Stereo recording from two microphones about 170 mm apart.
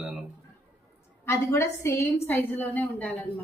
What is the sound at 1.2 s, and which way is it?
A woman's voice, 15° left (ahead or behind).